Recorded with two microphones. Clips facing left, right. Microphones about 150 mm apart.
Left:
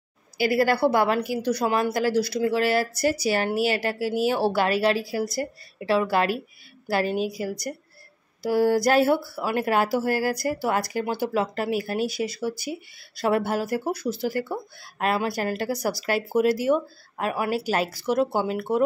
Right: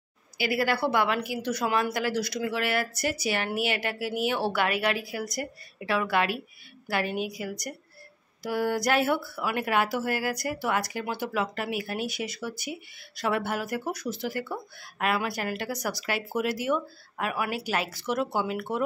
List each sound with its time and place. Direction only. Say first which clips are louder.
0.4 s speech: left 6 dB; 40° left (ahead or behind)